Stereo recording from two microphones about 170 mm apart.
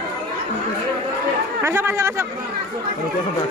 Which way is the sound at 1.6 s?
15° right (ahead or behind).